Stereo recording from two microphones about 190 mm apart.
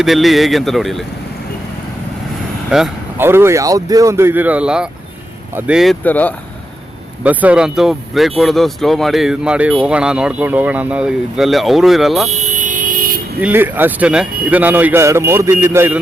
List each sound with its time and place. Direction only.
0.0 s speech: centre (ahead or behind)
2.6 s a man's voice: 5° right (ahead or behind)
7.3 s speech: 5° right (ahead or behind)
12.4 s vehicle: 40° right (ahead or behind)
13.4 s a man's voice: 10° right (ahead or behind)